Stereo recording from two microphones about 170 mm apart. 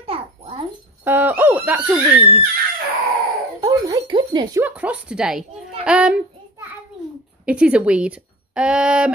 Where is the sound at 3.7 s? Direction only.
20° right (ahead or behind).